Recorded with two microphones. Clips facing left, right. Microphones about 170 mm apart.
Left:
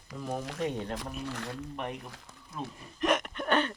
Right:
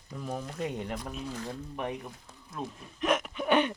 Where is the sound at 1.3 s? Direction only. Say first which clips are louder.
Even; 70° left (ahead or behind).